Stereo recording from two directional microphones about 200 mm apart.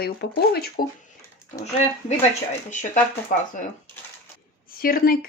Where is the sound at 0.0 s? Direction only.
50° left (ahead or behind).